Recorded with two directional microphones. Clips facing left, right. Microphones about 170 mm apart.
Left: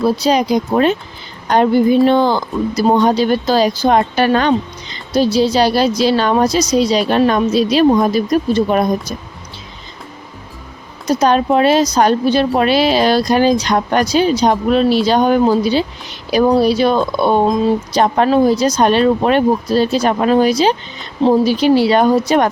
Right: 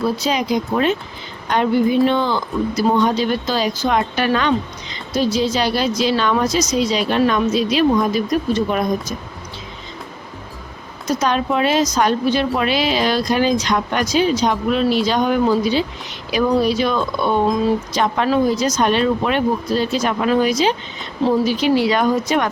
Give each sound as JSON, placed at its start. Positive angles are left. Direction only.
{"t": 0.2, "sound": "speech", "side_deg": 35}
{"t": 11.0, "sound": "speech", "side_deg": 35}